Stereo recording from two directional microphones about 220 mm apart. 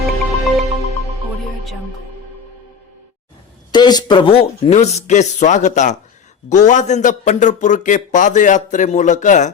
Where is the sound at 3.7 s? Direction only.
20° left (ahead or behind).